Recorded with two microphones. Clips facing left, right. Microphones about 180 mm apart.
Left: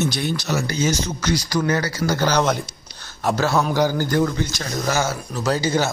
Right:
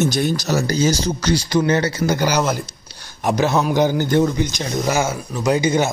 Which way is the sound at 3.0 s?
15° right (ahead or behind).